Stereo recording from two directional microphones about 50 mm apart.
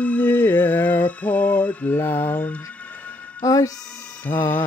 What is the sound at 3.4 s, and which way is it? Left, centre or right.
Speech, left.